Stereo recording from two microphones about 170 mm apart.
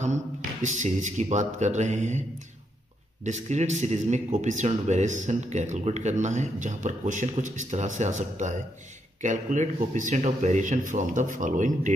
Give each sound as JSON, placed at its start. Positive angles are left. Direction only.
{"t": 0.0, "sound": "speech", "side_deg": -45}
{"t": 3.3, "sound": "speech", "side_deg": -40}